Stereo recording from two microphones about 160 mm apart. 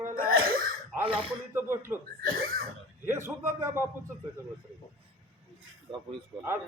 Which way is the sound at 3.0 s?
15° right (ahead or behind).